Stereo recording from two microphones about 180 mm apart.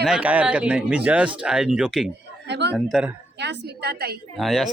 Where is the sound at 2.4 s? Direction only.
70° right (ahead or behind).